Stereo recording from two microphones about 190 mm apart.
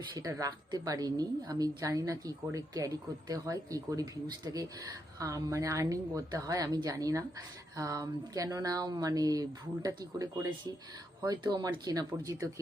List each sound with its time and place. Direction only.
0.1 s speech: 15° right (ahead or behind)